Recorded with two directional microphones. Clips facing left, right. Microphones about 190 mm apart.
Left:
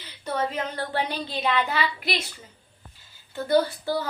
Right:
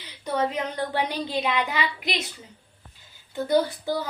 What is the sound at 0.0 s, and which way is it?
Speech, 15° right (ahead or behind).